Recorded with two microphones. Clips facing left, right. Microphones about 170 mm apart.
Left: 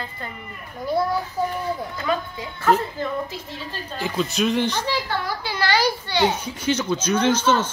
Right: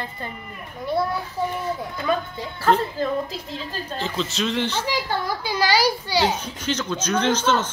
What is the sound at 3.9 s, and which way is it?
Speech, 10° left (ahead or behind).